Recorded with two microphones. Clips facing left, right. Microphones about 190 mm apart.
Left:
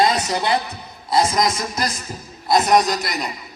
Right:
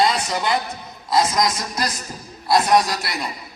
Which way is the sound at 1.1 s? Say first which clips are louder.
Left 1 dB; 25° left (ahead or behind).